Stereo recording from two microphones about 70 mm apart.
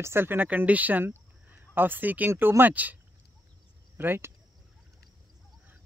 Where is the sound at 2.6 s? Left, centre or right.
Right.